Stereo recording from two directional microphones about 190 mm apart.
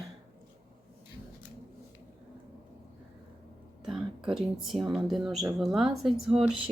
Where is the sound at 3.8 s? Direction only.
Centre (ahead or behind).